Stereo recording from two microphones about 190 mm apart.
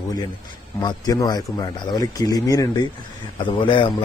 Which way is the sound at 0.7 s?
20° left (ahead or behind).